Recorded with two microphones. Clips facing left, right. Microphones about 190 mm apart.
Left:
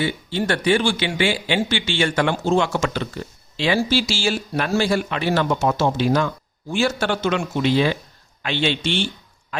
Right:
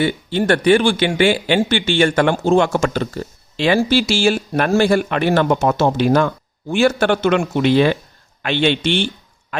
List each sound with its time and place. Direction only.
0.0 s speech: 55° right (ahead or behind)